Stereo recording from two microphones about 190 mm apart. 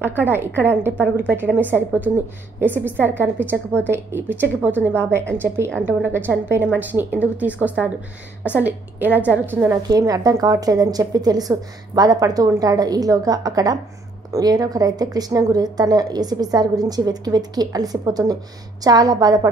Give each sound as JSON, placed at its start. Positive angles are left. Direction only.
{"t": 0.0, "sound": "a woman's voice", "side_deg": -10}